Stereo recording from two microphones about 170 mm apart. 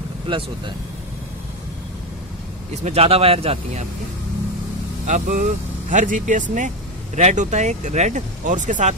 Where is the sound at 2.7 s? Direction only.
40° right (ahead or behind).